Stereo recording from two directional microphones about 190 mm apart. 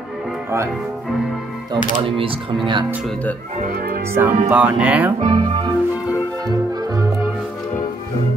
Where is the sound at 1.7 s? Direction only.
25° right (ahead or behind).